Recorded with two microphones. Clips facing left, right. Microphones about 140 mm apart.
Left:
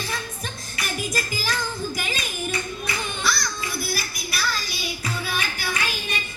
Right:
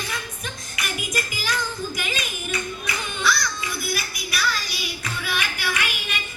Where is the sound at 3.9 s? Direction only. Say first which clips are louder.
Right 1 dB; 35° left (ahead or behind).